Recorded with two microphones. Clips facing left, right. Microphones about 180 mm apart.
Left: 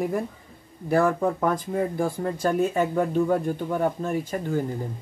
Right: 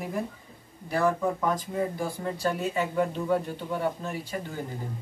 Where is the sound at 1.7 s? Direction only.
50° left (ahead or behind).